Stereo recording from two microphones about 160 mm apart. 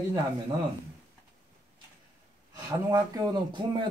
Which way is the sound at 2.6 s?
25° right (ahead or behind).